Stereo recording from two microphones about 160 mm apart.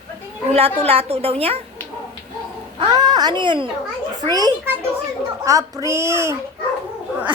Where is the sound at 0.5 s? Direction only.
40° right (ahead or behind).